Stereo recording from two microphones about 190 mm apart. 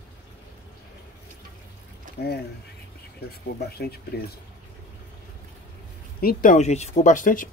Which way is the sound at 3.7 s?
55° left (ahead or behind).